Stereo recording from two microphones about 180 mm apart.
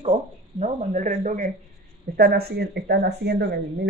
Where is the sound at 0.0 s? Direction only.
35° right (ahead or behind).